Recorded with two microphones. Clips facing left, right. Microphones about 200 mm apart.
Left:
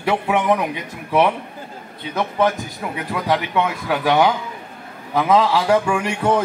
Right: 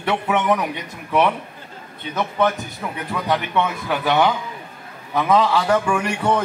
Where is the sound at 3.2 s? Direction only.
10° left (ahead or behind).